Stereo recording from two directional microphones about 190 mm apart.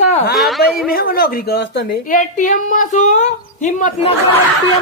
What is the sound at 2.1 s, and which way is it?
A woman's voice, 40° left (ahead or behind).